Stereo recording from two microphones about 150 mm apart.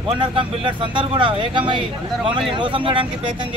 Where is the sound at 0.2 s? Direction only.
35° right (ahead or behind).